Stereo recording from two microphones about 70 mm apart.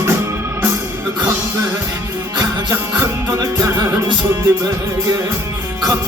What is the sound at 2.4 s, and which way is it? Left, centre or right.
Music, right.